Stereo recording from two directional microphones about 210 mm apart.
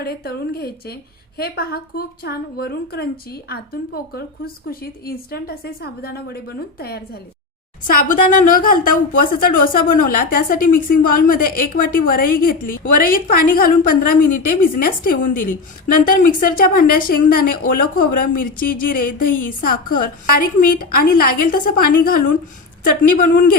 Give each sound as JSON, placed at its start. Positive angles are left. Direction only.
{"t": 0.0, "sound": "a woman's voice", "side_deg": 50}